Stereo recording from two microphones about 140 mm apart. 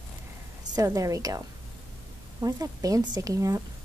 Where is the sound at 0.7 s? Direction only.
25° right (ahead or behind).